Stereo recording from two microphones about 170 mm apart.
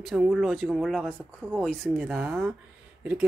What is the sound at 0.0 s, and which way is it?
Speech, 5° right (ahead or behind).